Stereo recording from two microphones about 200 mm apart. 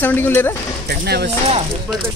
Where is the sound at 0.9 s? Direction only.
55° right (ahead or behind).